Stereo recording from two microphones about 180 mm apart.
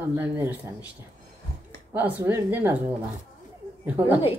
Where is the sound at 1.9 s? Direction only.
10° right (ahead or behind).